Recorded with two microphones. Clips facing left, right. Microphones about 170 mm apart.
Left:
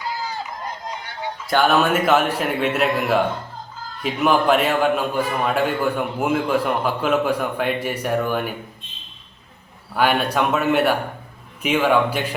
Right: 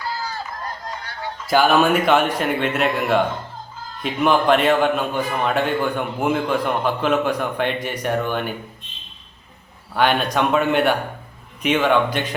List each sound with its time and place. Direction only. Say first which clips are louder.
0.0 s a sound: even; 20° left (ahead or behind)
1.5 s a man's voice: right 2 dB; centre (ahead or behind)
9.9 s a man's voice: even; 5° left (ahead or behind)